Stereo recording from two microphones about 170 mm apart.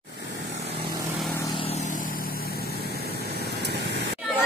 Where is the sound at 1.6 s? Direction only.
40° left (ahead or behind).